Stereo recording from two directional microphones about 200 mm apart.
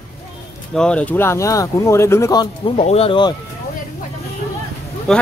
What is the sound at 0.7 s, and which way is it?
Speech, 5° left (ahead or behind).